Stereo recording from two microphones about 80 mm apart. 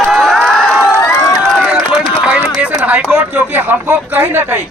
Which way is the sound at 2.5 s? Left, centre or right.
Centre.